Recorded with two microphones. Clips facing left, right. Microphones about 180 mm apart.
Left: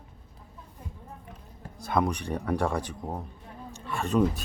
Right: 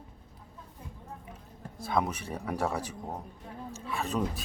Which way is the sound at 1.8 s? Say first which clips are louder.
Left 3 dB; centre (ahead or behind).